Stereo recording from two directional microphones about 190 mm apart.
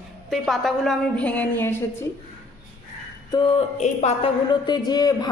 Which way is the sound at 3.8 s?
35° left (ahead or behind).